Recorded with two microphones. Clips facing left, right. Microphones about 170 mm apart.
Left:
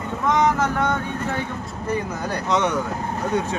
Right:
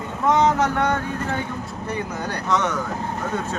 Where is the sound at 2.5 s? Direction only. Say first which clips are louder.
Left 1 dB; 20° left (ahead or behind).